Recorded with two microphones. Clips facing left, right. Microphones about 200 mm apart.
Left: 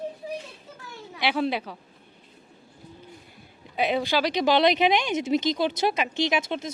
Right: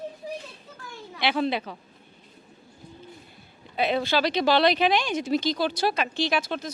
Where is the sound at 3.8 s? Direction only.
15° left (ahead or behind).